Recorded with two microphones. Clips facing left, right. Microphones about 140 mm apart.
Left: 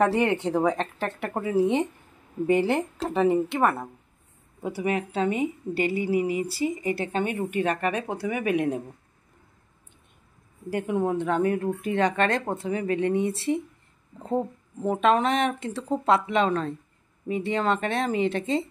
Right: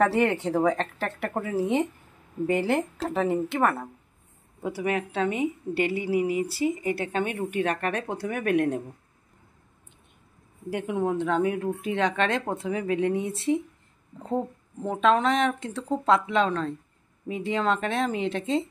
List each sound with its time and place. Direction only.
0.0 s speech: centre (ahead or behind)
10.7 s speech: centre (ahead or behind)